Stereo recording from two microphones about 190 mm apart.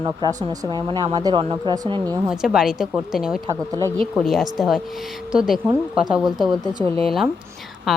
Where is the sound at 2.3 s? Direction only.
5° right (ahead or behind).